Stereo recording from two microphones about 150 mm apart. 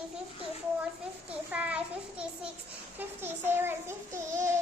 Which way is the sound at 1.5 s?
10° right (ahead or behind).